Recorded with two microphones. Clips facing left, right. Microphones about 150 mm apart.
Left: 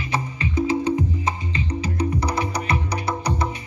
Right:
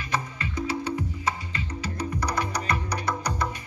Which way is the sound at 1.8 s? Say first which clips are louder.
Left 5 dB; 10° left (ahead or behind).